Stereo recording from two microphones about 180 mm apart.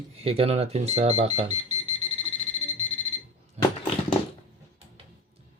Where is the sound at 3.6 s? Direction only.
35° right (ahead or behind).